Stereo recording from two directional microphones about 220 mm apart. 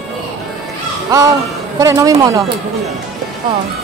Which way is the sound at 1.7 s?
15° right (ahead or behind).